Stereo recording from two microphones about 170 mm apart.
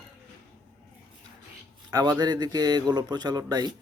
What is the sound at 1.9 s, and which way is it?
Speech, 20° right (ahead or behind).